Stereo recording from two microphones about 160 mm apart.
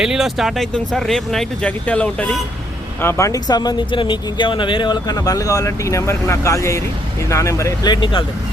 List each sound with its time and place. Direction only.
0.0 s speech: 5° right (ahead or behind); by 7.9 s 20° left (ahead or behind)